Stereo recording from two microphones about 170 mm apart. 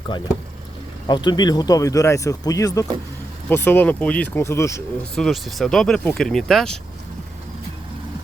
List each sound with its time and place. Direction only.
1.0 s speech: 25° left (ahead or behind)
5.1 s speech: centre (ahead or behind)